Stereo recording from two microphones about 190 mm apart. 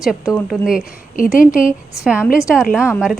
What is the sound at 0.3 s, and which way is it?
Speech, centre (ahead or behind).